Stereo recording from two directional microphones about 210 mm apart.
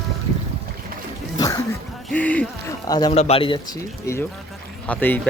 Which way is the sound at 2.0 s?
5° left (ahead or behind).